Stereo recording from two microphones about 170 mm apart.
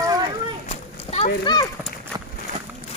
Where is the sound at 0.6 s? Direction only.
40° left (ahead or behind).